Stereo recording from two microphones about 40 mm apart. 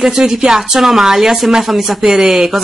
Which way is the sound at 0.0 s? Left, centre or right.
Centre.